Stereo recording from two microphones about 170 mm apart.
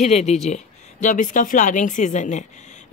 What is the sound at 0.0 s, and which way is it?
Speech, 40° left (ahead or behind).